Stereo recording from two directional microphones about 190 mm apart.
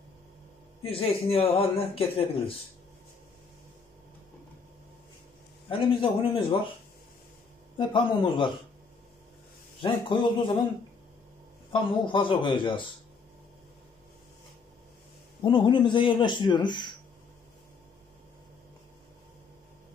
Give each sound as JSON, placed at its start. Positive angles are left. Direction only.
{"t": 0.8, "sound": "speech", "side_deg": 30}
{"t": 5.7, "sound": "a man's voice", "side_deg": 30}
{"t": 7.7, "sound": "a man's voice", "side_deg": 25}
{"t": 9.8, "sound": "a man's voice", "side_deg": 25}
{"t": 11.7, "sound": "a man's voice", "side_deg": 25}
{"t": 15.4, "sound": "a man's voice", "side_deg": 25}